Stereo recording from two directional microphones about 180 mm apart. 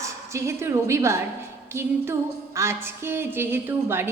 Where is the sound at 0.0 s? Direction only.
15° right (ahead or behind).